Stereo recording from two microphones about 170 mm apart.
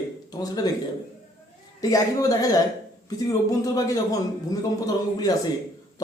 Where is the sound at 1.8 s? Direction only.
20° left (ahead or behind).